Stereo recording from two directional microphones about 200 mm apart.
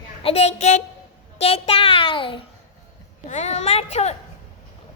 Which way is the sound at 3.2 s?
35° left (ahead or behind).